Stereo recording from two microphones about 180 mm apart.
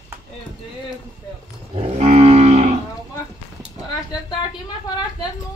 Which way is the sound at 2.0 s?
35° right (ahead or behind).